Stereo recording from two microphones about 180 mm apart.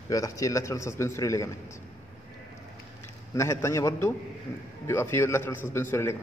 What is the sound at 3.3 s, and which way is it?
A man's voice, 15° left (ahead or behind).